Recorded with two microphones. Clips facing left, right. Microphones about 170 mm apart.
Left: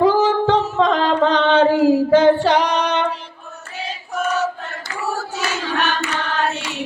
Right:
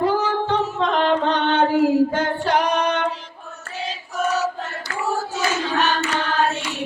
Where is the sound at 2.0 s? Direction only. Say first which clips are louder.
Left 9 dB; 90° left.